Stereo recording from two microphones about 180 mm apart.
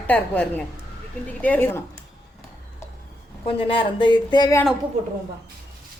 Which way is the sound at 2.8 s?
15° left (ahead or behind).